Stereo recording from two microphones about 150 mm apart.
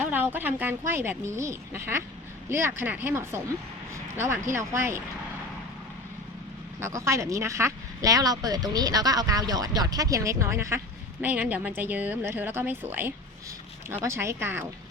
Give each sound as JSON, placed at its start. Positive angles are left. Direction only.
{"t": 0.0, "sound": "speech", "side_deg": -10}
{"t": 6.8, "sound": "speech", "side_deg": -20}